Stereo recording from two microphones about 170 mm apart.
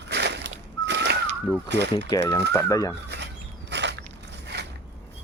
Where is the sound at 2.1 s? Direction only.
25° left (ahead or behind).